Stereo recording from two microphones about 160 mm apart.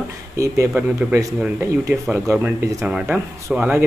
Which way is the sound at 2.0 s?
Centre (ahead or behind).